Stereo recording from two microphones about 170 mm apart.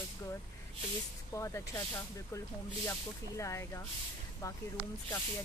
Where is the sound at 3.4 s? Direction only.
15° left (ahead or behind).